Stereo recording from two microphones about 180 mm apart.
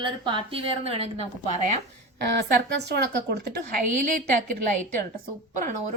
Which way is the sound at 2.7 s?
65° right (ahead or behind).